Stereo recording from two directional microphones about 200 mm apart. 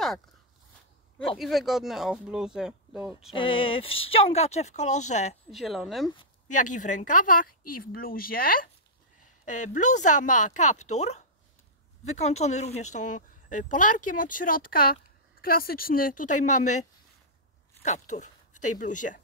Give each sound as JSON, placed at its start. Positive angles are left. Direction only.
{"t": 1.4, "sound": "speech", "side_deg": 0}
{"t": 3.3, "sound": "speech", "side_deg": 25}
{"t": 5.5, "sound": "speech", "side_deg": 0}
{"t": 6.5, "sound": "a woman's voice", "side_deg": 40}
{"t": 17.8, "sound": "speech", "side_deg": 35}